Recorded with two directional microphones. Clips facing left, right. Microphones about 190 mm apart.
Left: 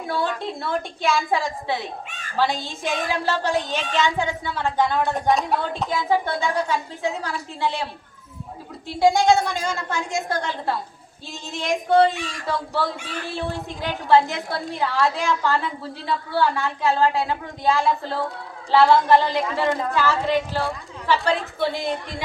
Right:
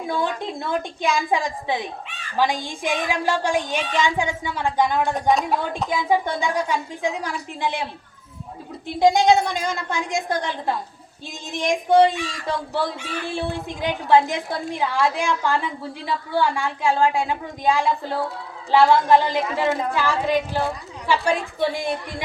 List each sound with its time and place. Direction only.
0.1 s a woman's voice: 15° right (ahead or behind)
2.0 s a woman's voice: 45° left (ahead or behind)
2.3 s a woman's voice: 15° right (ahead or behind)
5.3 s a woman's voice: centre (ahead or behind)
5.9 s a woman's voice: 15° right (ahead or behind)
9.0 s a woman's voice: 20° right (ahead or behind)